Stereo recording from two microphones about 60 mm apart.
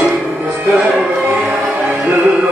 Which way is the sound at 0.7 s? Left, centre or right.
Right.